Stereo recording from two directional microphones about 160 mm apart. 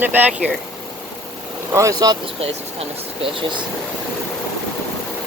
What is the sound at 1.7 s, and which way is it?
Speech, 20° right (ahead or behind).